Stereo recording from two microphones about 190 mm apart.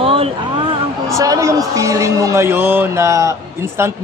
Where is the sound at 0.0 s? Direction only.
30° right (ahead or behind).